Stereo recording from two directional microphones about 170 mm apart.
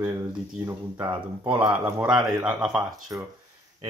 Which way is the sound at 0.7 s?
20° right (ahead or behind).